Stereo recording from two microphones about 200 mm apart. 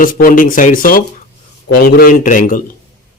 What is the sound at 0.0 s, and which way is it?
Speech, 45° left (ahead or behind).